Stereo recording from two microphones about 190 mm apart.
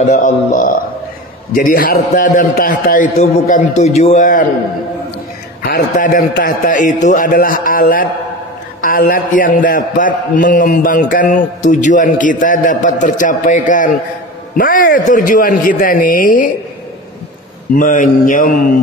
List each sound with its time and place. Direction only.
0.0 s a man's voice: 40° left (ahead or behind)
5.6 s a man's voice: 50° left (ahead or behind)
17.7 s a man's voice: 45° left (ahead or behind)